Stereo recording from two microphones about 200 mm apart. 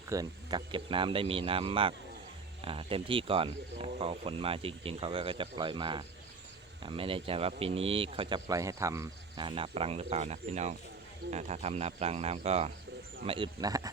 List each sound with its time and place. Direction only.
0.1 s speech: 20° right (ahead or behind)